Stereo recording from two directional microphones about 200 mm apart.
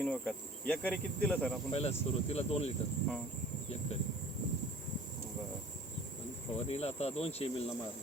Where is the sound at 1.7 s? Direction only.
30° left (ahead or behind).